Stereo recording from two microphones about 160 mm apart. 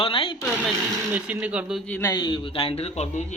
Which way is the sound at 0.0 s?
35° left (ahead or behind).